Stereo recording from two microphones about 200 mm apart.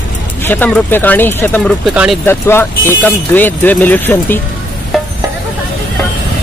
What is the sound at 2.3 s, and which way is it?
Speech, 10° left (ahead or behind).